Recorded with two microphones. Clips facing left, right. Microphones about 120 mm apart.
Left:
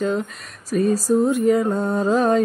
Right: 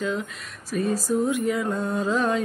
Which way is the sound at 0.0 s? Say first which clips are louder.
Left 5 dB; 45° left (ahead or behind).